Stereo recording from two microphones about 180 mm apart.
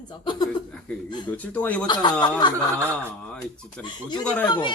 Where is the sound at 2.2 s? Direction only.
25° left (ahead or behind).